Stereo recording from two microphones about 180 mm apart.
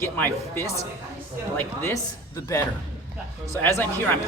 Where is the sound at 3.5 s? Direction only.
15° left (ahead or behind).